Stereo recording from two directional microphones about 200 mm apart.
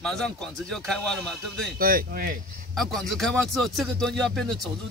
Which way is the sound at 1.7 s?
45° right (ahead or behind).